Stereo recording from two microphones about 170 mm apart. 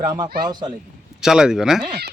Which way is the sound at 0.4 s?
25° right (ahead or behind).